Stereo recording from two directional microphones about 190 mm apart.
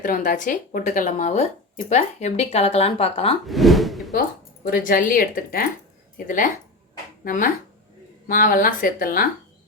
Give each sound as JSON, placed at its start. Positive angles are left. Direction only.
{"t": 0.0, "sound": "speech", "side_deg": 45}
{"t": 3.4, "sound": "speech", "side_deg": 0}
{"t": 4.6, "sound": "speech", "side_deg": 50}